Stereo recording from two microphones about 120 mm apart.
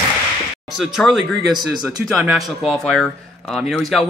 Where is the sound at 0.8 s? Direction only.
Centre (ahead or behind).